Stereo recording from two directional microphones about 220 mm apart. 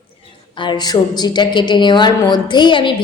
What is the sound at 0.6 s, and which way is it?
A woman's voice, 20° left (ahead or behind).